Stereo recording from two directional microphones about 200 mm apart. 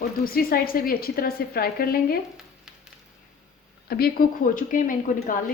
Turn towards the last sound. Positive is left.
turn(degrees=40)  # may be behind; listen again after turning